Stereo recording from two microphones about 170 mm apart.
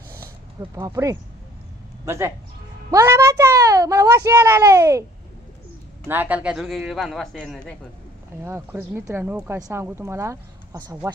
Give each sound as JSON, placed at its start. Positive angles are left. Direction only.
{"t": 0.6, "sound": "speech", "side_deg": -20}
{"t": 6.0, "sound": "a man's voice", "side_deg": -10}
{"t": 8.5, "sound": "speech", "side_deg": -15}